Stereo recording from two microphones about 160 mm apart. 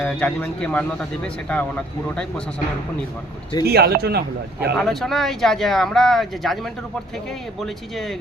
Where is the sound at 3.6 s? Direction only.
80° right.